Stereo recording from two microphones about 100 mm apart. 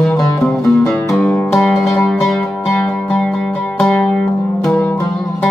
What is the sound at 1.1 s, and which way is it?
Music, 15° left (ahead or behind).